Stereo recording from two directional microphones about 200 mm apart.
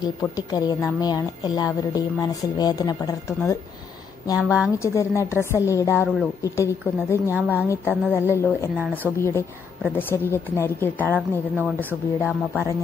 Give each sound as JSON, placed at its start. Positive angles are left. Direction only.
{"t": 0.0, "sound": "speech", "side_deg": 20}
{"t": 4.4, "sound": "a woman's voice", "side_deg": -5}
{"t": 4.7, "sound": "a woman's voice", "side_deg": 15}
{"t": 7.2, "sound": "speech", "side_deg": -10}
{"t": 7.6, "sound": "a woman's voice", "side_deg": 15}
{"t": 11.1, "sound": "speech", "side_deg": -10}